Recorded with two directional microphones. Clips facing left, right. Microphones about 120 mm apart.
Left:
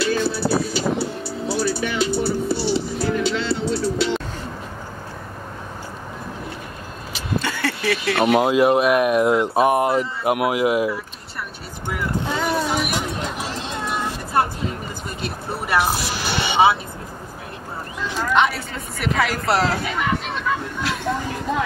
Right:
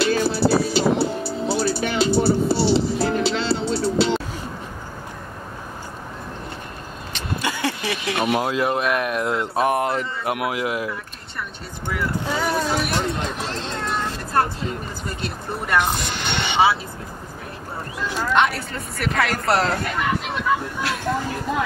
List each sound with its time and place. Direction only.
0.4 s speech: 30° right (ahead or behind)
0.7 s music: 30° right (ahead or behind)
7.3 s a sound: 15° right (ahead or behind)
8.4 s speech: 15° left (ahead or behind)
12.4 s vehicle: 10° left (ahead or behind)
15.6 s speech: 5° left (ahead or behind)
18.3 s speech: centre (ahead or behind)
20.8 s a sound: centre (ahead or behind)